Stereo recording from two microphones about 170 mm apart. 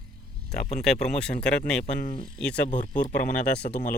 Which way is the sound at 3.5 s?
75° left (ahead or behind).